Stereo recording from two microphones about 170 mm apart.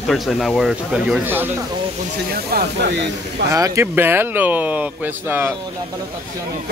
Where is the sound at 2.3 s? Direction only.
60° right (ahead or behind).